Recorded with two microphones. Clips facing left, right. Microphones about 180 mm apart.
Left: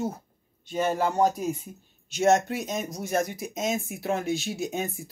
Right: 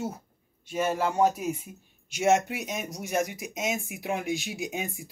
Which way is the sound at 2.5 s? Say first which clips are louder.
Left 3 dB; 10° right (ahead or behind).